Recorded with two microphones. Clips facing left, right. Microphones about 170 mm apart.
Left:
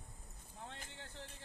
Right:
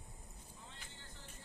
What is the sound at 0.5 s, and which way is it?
Vehicle, 65° left (ahead or behind).